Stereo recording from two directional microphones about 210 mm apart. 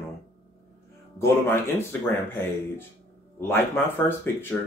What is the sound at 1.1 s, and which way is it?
Speech, 10° left (ahead or behind).